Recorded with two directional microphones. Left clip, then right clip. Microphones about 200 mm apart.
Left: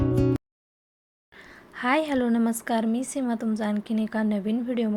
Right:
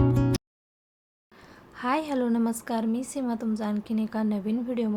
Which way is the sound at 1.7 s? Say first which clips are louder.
Left 3 dB; 10° left (ahead or behind).